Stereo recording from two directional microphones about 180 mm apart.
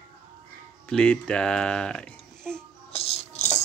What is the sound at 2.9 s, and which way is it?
Rattle, 35° left (ahead or behind).